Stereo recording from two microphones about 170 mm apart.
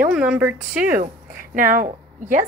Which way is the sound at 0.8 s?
55° right (ahead or behind).